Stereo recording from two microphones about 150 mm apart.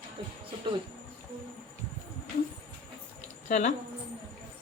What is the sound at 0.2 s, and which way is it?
Speech, 30° right (ahead or behind).